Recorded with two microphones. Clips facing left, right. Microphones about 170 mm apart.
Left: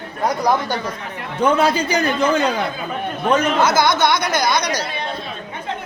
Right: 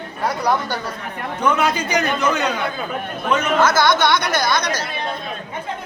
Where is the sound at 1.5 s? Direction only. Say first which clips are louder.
Left 3 dB; 30° left (ahead or behind).